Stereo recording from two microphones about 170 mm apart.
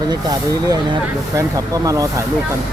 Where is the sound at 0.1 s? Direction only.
20° right (ahead or behind).